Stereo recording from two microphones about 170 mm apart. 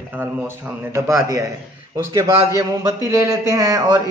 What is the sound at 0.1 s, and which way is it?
A man's voice, 10° right (ahead or behind).